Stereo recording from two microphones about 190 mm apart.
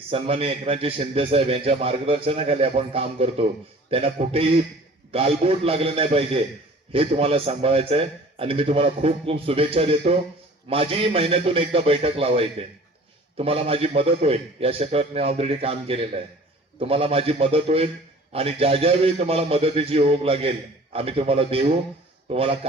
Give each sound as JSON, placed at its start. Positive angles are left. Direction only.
{"t": 0.1, "sound": "a man's voice", "side_deg": -30}